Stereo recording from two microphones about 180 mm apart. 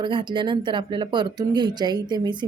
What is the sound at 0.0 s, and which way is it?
Speech, 25° right (ahead or behind).